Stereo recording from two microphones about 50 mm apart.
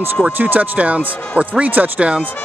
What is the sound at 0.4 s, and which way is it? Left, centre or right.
Speech, right.